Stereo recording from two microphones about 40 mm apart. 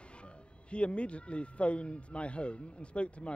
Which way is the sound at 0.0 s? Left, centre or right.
Left.